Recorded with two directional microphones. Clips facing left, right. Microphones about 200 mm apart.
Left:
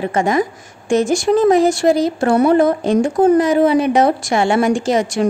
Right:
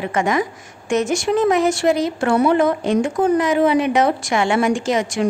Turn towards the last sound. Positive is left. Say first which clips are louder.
# left 3 dB
turn(degrees=35)  # may be behind; listen again after turning